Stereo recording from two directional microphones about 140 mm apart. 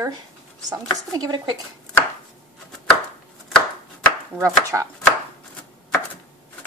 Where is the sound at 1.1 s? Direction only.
30° right (ahead or behind).